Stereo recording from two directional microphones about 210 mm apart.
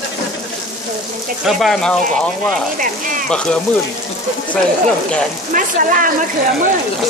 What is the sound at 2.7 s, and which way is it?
Speech, 40° right (ahead or behind).